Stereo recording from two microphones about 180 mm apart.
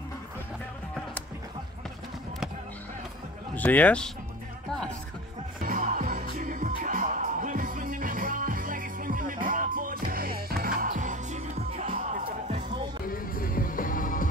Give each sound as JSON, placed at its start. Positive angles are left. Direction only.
{"t": 3.5, "sound": "speech", "side_deg": 10}
{"t": 5.6, "sound": "music", "side_deg": -50}
{"t": 13.1, "sound": "music", "side_deg": 50}